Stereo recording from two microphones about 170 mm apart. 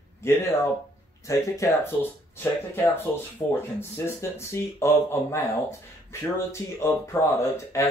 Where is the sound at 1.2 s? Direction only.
20° left (ahead or behind).